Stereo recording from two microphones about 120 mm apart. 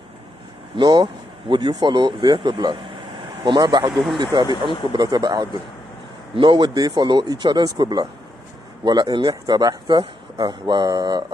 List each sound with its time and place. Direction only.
0.7 s speech: 40° right (ahead or behind)
3.9 s speech: centre (ahead or behind)
4.2 s speech: 35° right (ahead or behind)
4.5 s speech: 40° left (ahead or behind)
4.9 s speech: 35° right (ahead or behind)